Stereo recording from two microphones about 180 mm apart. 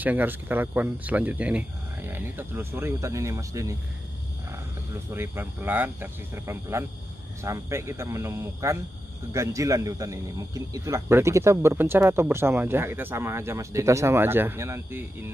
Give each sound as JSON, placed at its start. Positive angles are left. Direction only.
{"t": 0.0, "sound": "speech", "side_deg": -10}
{"t": 5.1, "sound": "speech", "side_deg": -15}